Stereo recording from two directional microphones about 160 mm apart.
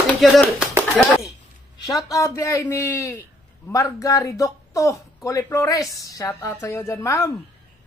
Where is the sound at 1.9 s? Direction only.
20° left (ahead or behind).